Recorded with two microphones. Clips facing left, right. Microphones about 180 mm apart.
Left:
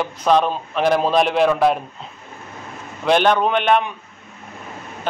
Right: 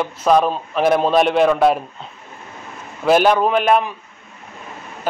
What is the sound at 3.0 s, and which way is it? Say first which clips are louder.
Speech: right 2 dB; 5° right (ahead or behind).